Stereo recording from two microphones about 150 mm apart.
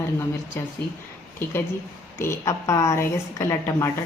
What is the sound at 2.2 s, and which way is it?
A woman's voice, 20° left (ahead or behind).